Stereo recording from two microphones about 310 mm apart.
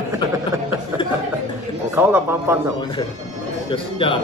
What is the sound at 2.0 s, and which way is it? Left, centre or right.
Speech, centre.